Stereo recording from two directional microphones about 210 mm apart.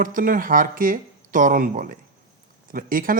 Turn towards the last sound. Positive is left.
turn(degrees=-40)  # may be behind; listen again after turning